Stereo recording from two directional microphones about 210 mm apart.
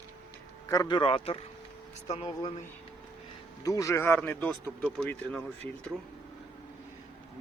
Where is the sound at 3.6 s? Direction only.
15° left (ahead or behind).